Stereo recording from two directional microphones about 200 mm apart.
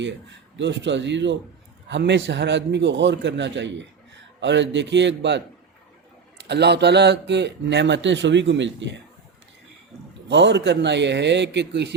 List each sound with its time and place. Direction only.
0.5 s a man's voice: 65° right (ahead or behind)
6.5 s a man's voice: 55° right (ahead or behind)
10.2 s a man's voice: 60° right (ahead or behind)